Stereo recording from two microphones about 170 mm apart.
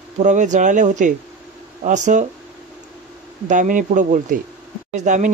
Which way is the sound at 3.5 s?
50° right (ahead or behind).